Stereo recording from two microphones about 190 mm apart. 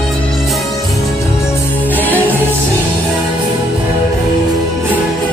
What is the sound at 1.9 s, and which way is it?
Music, 10° left (ahead or behind).